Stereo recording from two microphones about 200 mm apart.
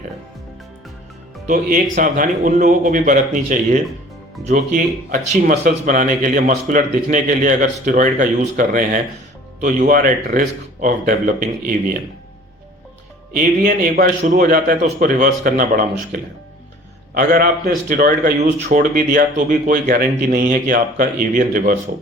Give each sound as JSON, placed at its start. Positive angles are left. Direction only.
{"t": 1.5, "sound": "speech", "side_deg": -40}
{"t": 13.3, "sound": "speech", "side_deg": -40}